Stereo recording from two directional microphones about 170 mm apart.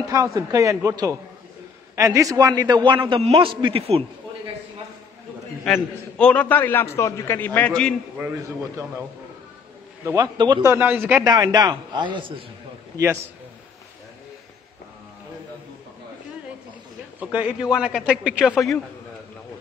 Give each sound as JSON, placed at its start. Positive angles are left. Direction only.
{"t": 0.0, "sound": "a man's voice", "side_deg": -20}
{"t": 5.7, "sound": "a man's voice", "side_deg": 5}
{"t": 8.2, "sound": "a man's voice", "side_deg": -10}
{"t": 10.0, "sound": "a man's voice", "side_deg": -20}
{"t": 10.7, "sound": "a man's voice", "side_deg": -10}
{"t": 11.2, "sound": "a man's voice", "side_deg": -20}
{"t": 12.9, "sound": "a man's voice", "side_deg": -15}
{"t": 17.2, "sound": "a man's voice", "side_deg": -10}